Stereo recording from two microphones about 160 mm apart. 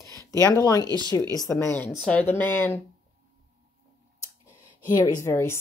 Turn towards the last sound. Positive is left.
turn(degrees=15)  # may be behind; listen again after turning